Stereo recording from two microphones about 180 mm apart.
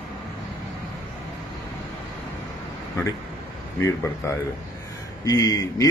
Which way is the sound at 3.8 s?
15° left (ahead or behind).